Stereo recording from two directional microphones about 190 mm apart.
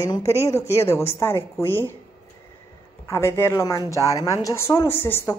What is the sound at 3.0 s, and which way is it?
Speech, 15° left (ahead or behind).